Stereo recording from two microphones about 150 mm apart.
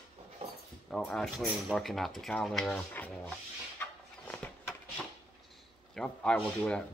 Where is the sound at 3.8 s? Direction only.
10° left (ahead or behind).